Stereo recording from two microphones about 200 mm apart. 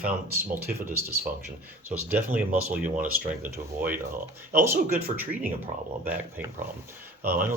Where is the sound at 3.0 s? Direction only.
10° right (ahead or behind).